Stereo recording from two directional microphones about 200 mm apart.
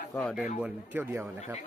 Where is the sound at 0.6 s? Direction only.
10° right (ahead or behind).